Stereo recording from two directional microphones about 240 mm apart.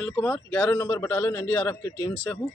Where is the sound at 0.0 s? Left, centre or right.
Centre.